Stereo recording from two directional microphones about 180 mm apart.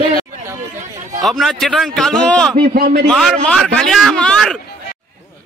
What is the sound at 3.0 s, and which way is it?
A man's voice, 5° left (ahead or behind).